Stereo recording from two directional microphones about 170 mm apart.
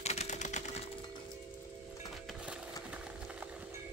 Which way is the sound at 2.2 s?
5° right (ahead or behind).